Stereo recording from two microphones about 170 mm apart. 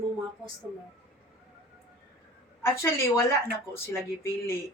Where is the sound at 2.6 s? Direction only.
15° left (ahead or behind).